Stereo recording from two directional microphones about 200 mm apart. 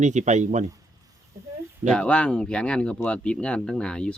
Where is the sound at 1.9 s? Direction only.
5° left (ahead or behind).